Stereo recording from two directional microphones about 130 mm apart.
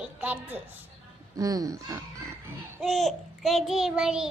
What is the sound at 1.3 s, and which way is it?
Music, 25° right (ahead or behind).